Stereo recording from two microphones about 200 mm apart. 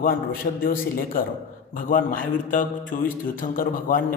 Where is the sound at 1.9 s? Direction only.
45° left (ahead or behind).